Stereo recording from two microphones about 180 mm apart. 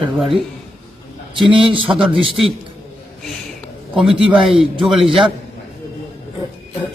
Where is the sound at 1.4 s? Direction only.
30° right (ahead or behind).